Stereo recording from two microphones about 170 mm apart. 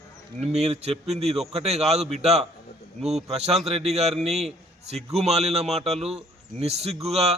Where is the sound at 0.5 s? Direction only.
40° right (ahead or behind).